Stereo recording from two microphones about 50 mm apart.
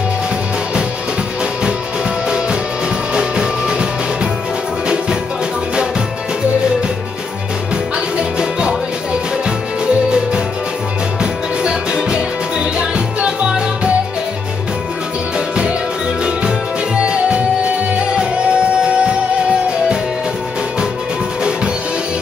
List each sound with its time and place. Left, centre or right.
2.2 s music: centre
7.7 s music: centre
11.6 s music: centre
15.3 s music: centre